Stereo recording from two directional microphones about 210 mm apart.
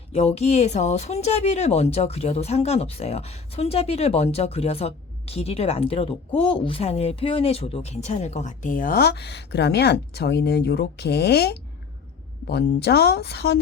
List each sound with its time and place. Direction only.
0.1 s speech: 30° left (ahead or behind); by 13.6 s 50° left (ahead or behind)